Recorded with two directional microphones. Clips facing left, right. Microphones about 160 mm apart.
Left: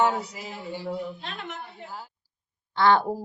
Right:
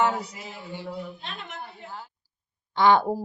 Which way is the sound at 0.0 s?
Centre (ahead or behind).